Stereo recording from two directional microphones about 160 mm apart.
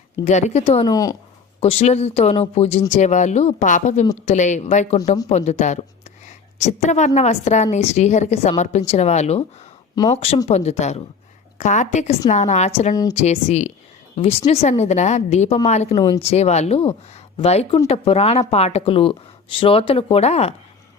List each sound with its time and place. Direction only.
0.3 s a woman's voice: 45° left (ahead or behind)
0.9 s speech: 25° left (ahead or behind)
1.6 s a woman's voice: 40° left (ahead or behind)
12.9 s speech: 25° left (ahead or behind)
13.1 s a woman's voice: 45° left (ahead or behind)
15.9 s speech: 25° left (ahead or behind)
16.2 s speech: 40° left (ahead or behind)